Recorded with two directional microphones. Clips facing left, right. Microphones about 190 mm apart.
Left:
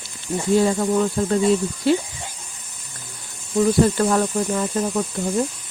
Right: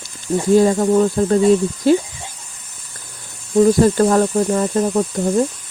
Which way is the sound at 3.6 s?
40° right (ahead or behind).